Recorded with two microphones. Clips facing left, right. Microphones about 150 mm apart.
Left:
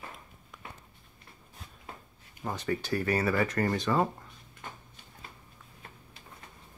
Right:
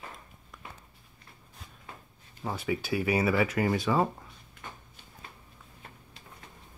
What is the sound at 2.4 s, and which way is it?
Speech, 5° right (ahead or behind).